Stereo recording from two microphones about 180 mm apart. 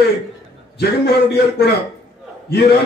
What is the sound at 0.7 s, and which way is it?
A man's voice, 65° left (ahead or behind).